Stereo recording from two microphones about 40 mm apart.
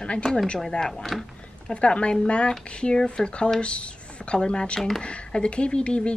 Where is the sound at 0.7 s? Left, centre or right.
Centre.